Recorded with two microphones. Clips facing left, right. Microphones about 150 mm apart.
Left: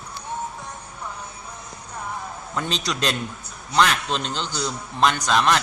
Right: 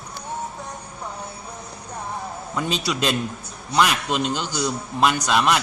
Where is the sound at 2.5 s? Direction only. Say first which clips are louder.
Right 2 dB; 5° right (ahead or behind).